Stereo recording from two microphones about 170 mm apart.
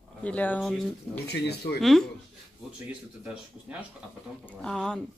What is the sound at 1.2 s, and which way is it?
Speech, 75° left (ahead or behind).